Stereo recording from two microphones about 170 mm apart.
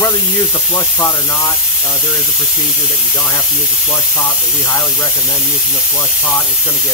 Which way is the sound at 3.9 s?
Centre (ahead or behind).